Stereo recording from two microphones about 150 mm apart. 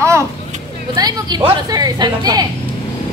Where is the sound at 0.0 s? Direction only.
20° right (ahead or behind).